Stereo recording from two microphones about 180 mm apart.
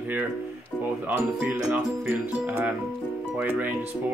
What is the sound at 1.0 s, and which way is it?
Speech, 10° right (ahead or behind).